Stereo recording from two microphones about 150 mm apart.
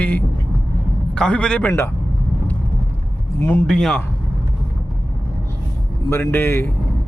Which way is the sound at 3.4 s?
15° left (ahead or behind).